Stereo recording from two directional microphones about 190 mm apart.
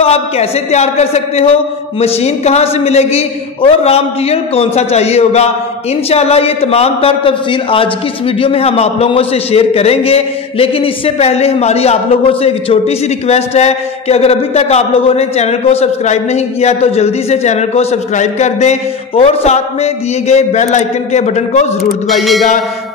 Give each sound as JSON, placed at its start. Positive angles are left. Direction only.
{"t": 0.0, "sound": "a man's voice", "side_deg": 35}